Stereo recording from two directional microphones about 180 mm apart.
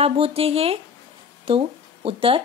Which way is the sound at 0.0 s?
35° right (ahead or behind).